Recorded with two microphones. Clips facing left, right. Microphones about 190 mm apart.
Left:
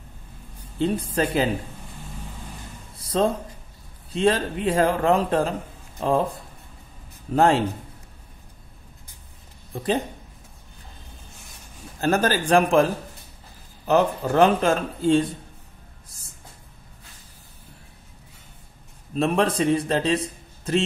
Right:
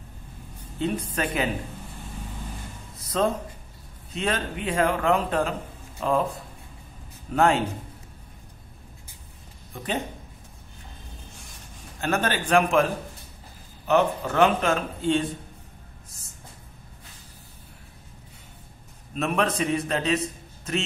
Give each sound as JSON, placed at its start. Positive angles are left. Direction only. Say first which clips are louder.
{"t": 0.7, "sound": "a man's voice", "louder": "left 4 dB", "side_deg": 30}
{"t": 3.0, "sound": "music", "louder": "left 3 dB", "side_deg": 30}
{"t": 4.1, "sound": "a man's voice", "louder": "left 7 dB", "side_deg": 30}
{"t": 7.3, "sound": "a man's voice", "louder": "left 3 dB", "side_deg": 35}
{"t": 9.7, "sound": "a man's voice", "louder": "left 6 dB", "side_deg": 35}
{"t": 12.0, "sound": "a man's voice", "louder": "left 4 dB", "side_deg": 35}
{"t": 19.1, "sound": "a man's voice", "louder": "left 4 dB", "side_deg": 30}